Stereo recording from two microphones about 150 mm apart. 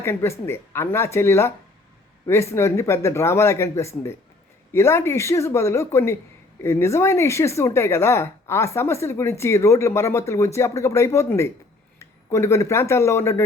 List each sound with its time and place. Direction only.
0.0 s speech: 15° left (ahead or behind)